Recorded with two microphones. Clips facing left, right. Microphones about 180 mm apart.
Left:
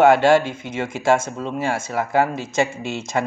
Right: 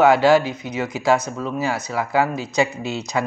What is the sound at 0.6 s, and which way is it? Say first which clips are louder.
Speech: even; 25° left (ahead or behind).